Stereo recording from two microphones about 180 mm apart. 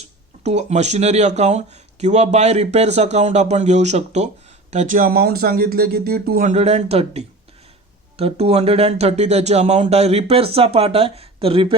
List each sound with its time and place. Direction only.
0.4 s speech: 40° right (ahead or behind)